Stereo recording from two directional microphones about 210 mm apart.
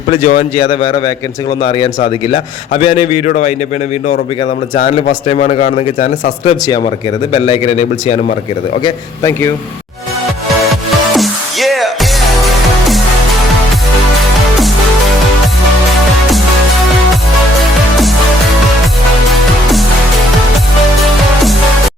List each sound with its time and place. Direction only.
0.1 s a man's voice: 40° left (ahead or behind)
0.5 s a man's voice: 25° left (ahead or behind)
3.2 s a man's voice: 35° left (ahead or behind)
4.9 s a man's voice: 30° left (ahead or behind)
6.4 s a man's voice: 25° left (ahead or behind)
8.8 s speech: 15° left (ahead or behind)
10.6 s music: centre (ahead or behind)